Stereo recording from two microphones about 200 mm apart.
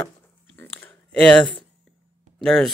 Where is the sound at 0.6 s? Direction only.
10° left (ahead or behind).